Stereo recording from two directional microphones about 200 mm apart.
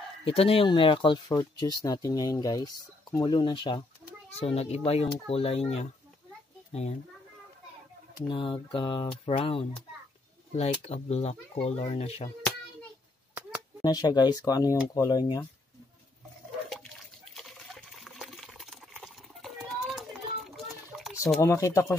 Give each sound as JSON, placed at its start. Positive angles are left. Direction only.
{"t": 0.2, "sound": "speech", "side_deg": 30}
{"t": 8.3, "sound": "speech", "side_deg": 25}
{"t": 13.8, "sound": "speech", "side_deg": 20}
{"t": 16.7, "sound": "liquid", "side_deg": 0}
{"t": 21.4, "sound": "speech", "side_deg": 15}